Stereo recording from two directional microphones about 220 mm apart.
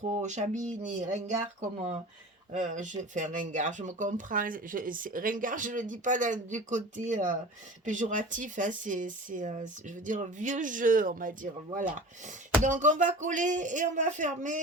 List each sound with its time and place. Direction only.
0.2 s speech: 30° right (ahead or behind)
2.5 s speech: 35° right (ahead or behind)